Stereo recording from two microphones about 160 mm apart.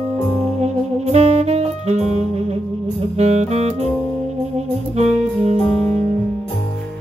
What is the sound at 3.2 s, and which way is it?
Music, 40° right (ahead or behind).